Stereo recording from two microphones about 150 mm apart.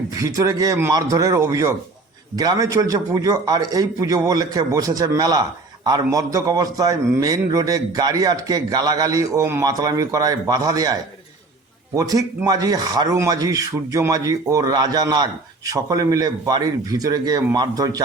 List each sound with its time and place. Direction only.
0.2 s a man's voice: 20° right (ahead or behind)
11.9 s a man's voice: 25° right (ahead or behind)